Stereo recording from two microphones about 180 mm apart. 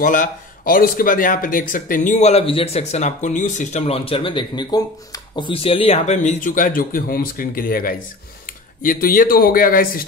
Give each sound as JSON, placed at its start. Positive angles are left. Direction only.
{"t": 0.0, "sound": "speech", "side_deg": 50}